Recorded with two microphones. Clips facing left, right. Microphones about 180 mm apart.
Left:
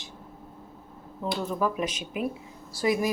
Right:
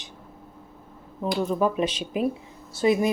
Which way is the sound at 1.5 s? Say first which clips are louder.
Right 4 dB; 20° right (ahead or behind).